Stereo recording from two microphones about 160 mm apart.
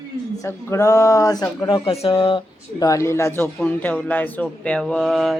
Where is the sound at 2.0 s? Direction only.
35° left (ahead or behind).